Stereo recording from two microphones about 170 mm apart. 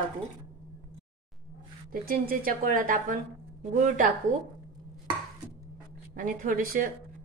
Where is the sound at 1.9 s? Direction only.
55° right (ahead or behind).